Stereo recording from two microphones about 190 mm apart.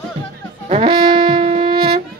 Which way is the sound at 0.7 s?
30° right (ahead or behind).